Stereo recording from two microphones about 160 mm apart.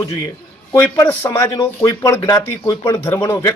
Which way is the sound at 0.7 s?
15° left (ahead or behind).